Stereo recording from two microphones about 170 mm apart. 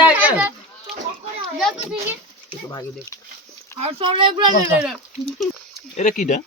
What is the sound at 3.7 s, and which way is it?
Speech, 35° right (ahead or behind).